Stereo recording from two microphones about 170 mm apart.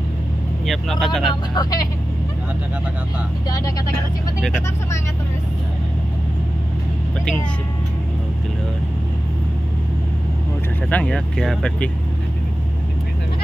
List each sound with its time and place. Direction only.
0.7 s speech: centre (ahead or behind)
1.5 s speech: 25° left (ahead or behind)
3.4 s speech: 20° left (ahead or behind)
4.4 s speech: centre (ahead or behind)
10.9 s speech: 5° left (ahead or behind)